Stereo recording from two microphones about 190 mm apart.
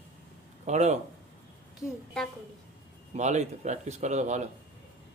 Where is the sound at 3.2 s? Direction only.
40° right (ahead or behind).